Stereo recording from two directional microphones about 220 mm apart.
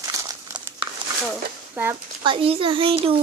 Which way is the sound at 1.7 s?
10° right (ahead or behind).